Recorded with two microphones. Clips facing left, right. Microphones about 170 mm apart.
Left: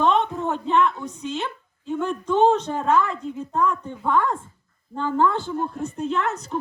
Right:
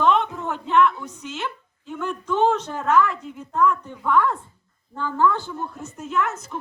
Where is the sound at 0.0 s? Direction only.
25° left (ahead or behind).